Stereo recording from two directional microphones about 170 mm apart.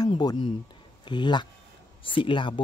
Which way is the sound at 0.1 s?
25° left (ahead or behind).